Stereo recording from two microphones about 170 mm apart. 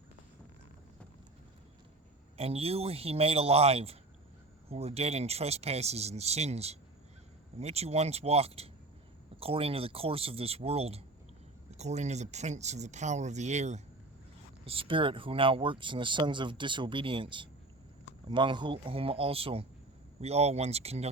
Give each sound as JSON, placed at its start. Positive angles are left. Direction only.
{"t": 2.4, "sound": "speech", "side_deg": -35}